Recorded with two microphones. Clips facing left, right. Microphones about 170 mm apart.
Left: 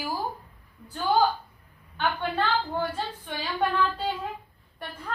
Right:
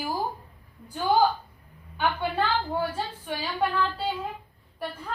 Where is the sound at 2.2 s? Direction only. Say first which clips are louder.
Even; 10° right (ahead or behind).